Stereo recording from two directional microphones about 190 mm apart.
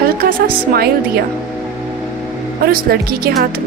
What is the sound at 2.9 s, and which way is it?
Speech, 55° right (ahead or behind).